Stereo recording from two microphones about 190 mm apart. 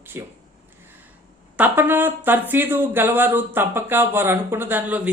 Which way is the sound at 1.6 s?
10° right (ahead or behind).